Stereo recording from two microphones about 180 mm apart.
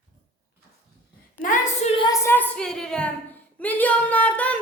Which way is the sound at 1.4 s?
45° left (ahead or behind).